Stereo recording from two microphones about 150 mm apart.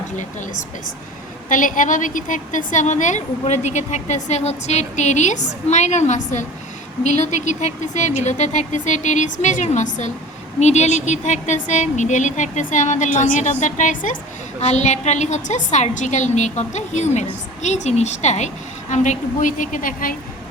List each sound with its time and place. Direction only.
1.5 s a woman's voice: 60° left (ahead or behind)
14.6 s a woman's voice: 50° left (ahead or behind); by 20.1 s 65° left (ahead or behind)